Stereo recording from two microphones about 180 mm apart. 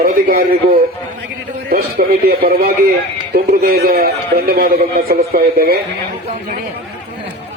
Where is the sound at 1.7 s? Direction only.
55° right (ahead or behind).